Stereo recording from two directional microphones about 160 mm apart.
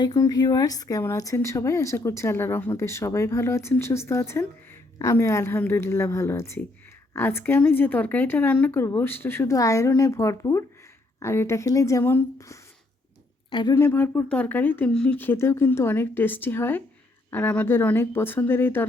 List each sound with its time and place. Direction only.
0.0 s speech: 25° left (ahead or behind)
13.5 s a woman's voice: 30° left (ahead or behind)
13.7 s speech: 15° left (ahead or behind)